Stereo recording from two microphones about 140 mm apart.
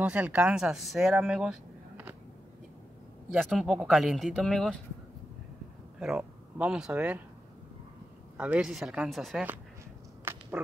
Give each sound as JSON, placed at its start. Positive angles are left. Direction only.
{"t": 0.0, "sound": "speech", "side_deg": -10}
{"t": 3.3, "sound": "speech", "side_deg": 0}
{"t": 5.9, "sound": "speech", "side_deg": -5}
{"t": 8.4, "sound": "speech", "side_deg": -5}
{"t": 10.3, "sound": "a sound", "side_deg": -15}